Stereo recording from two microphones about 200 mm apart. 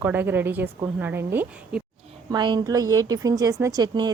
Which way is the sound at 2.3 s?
20° right (ahead or behind).